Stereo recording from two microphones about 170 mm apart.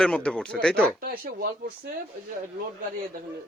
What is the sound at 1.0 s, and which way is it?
Speech, 60° right (ahead or behind).